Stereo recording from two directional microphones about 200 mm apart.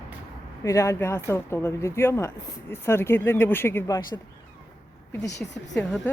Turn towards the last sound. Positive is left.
turn(degrees=5)  # may be behind; listen again after turning